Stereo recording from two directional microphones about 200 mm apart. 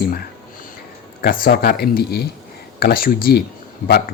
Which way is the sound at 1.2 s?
50° left (ahead or behind).